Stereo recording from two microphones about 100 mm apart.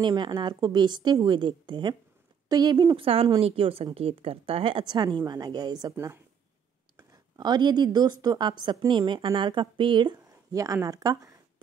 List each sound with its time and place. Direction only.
0.0 s speech: 50° right (ahead or behind)
3.0 s speech: 70° right (ahead or behind)
4.8 s speech: 50° right (ahead or behind)
5.9 s speech: 25° right (ahead or behind)
7.0 s speech: 40° right (ahead or behind)
10.5 s speech: 35° right (ahead or behind)